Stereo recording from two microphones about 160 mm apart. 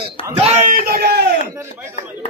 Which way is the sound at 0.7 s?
70° right (ahead or behind).